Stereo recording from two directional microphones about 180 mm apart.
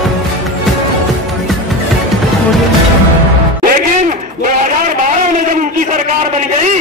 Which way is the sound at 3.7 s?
45° right (ahead or behind).